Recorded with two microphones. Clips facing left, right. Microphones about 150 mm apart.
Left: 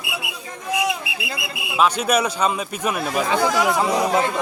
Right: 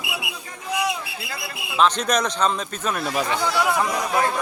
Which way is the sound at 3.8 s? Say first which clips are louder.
Left 3 dB; 25° left (ahead or behind).